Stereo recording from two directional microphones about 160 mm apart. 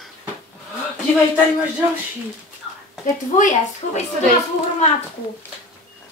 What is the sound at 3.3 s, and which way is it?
Speech, 50° left (ahead or behind).